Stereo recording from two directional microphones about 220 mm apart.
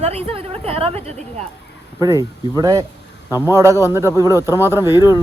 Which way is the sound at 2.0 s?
15° right (ahead or behind).